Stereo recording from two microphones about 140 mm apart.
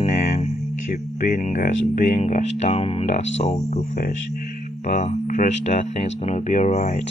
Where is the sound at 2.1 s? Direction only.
55° left (ahead or behind).